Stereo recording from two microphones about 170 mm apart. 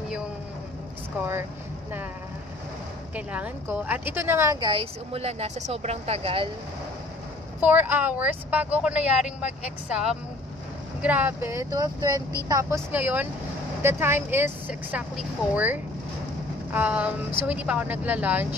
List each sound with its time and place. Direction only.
3.2 s speech: 10° right (ahead or behind)
4.6 s a woman's voice: 35° right (ahead or behind)
7.6 s speech: 10° right (ahead or behind)
11.0 s speech: 10° right (ahead or behind)